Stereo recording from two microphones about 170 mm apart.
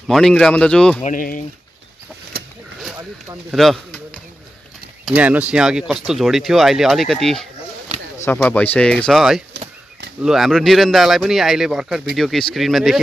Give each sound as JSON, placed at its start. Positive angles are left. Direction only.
{"t": 0.1, "sound": "speech", "side_deg": 5}
{"t": 1.0, "sound": "speech", "side_deg": 50}
{"t": 3.5, "sound": "speech", "side_deg": 0}
{"t": 5.0, "sound": "speech", "side_deg": -10}